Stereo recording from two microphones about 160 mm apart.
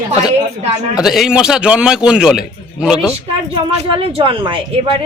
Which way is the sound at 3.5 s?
35° right (ahead or behind).